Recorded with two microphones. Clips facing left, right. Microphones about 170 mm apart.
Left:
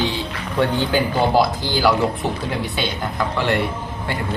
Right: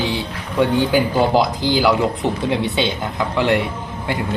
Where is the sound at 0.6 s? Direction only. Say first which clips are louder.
Right 3 dB; 15° right (ahead or behind).